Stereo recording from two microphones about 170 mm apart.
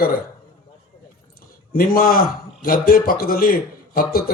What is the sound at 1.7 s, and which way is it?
Speech, 60° left (ahead or behind).